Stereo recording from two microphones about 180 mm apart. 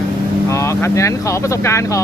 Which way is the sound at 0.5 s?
15° left (ahead or behind).